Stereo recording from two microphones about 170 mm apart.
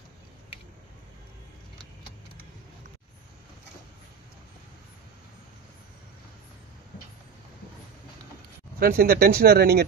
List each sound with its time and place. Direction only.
8.7 s speech: 60° right (ahead or behind)